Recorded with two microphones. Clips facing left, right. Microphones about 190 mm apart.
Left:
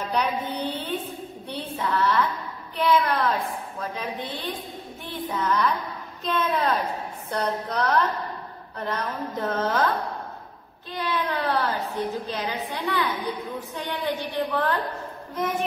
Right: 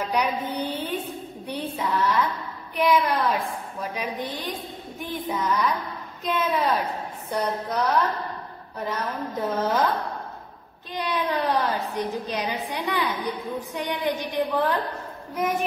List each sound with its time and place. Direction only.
0.0 s music: 10° right (ahead or behind)
1.5 s a woman's voice: 10° right (ahead or behind)